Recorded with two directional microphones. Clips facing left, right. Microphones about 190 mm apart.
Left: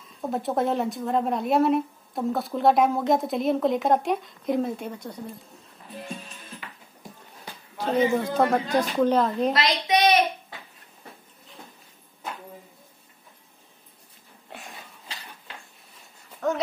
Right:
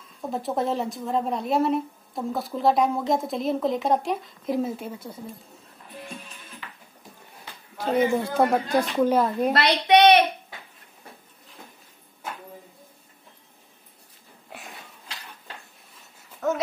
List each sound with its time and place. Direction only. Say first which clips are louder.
0.2 s a woman's voice: left 1 dB; centre (ahead or behind)
7.7 s speech: even; 10° right (ahead or behind)
9.5 s a woman's voice: right 4 dB; 65° right (ahead or behind)
16.4 s a sound: right 1 dB; centre (ahead or behind)